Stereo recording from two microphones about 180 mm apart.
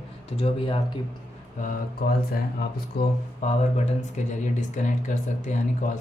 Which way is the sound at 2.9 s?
55° left (ahead or behind).